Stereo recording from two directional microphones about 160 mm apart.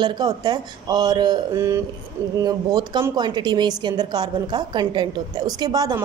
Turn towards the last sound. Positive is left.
turn(degrees=-25)  # may be behind; listen again after turning